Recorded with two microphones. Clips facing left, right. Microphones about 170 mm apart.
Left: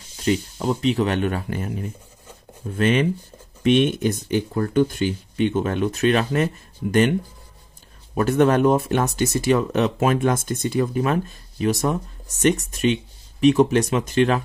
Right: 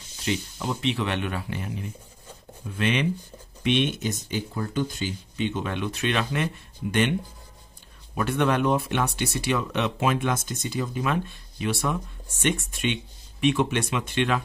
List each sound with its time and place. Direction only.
0.2 s speech: 40° left (ahead or behind)